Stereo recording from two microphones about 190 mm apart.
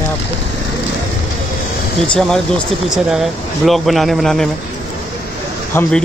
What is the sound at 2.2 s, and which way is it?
Speech, 5° left (ahead or behind).